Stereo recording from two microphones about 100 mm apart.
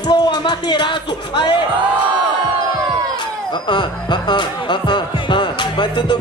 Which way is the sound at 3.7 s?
55° left (ahead or behind).